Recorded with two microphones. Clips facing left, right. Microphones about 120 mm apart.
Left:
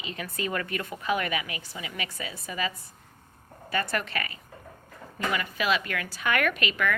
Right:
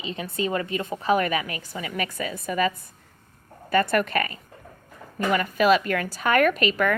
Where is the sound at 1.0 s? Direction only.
40° right (ahead or behind).